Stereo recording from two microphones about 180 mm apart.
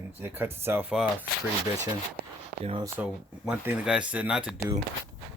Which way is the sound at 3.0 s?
5° right (ahead or behind).